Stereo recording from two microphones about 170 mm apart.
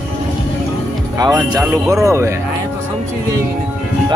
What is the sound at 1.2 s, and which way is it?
Speech, 25° right (ahead or behind).